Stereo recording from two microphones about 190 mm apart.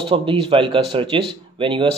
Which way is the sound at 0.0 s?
25° right (ahead or behind).